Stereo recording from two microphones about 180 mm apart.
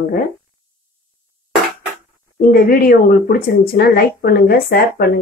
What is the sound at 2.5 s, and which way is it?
A woman's voice, 55° left (ahead or behind).